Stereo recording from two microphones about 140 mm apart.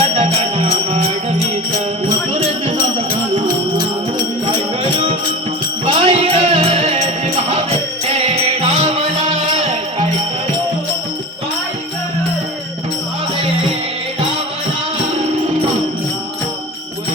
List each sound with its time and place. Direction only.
0.0 s music: 50° right (ahead or behind)
3.4 s music: 30° right (ahead or behind)
4.8 s music: 45° right (ahead or behind)